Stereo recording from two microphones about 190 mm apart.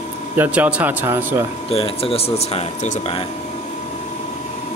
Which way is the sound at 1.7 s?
30° left (ahead or behind).